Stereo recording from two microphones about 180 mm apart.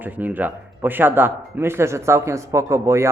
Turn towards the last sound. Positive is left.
turn(degrees=-15)  # may be behind; listen again after turning